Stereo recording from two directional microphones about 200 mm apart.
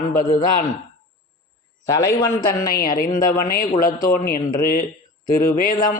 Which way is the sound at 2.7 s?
45° left (ahead or behind).